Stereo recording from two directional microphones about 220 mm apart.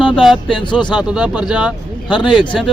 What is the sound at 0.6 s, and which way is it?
Speech, 20° left (ahead or behind).